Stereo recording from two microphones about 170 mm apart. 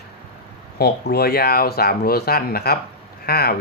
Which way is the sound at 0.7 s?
70° left (ahead or behind).